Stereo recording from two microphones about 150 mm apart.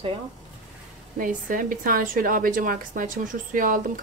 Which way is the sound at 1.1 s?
65° right (ahead or behind).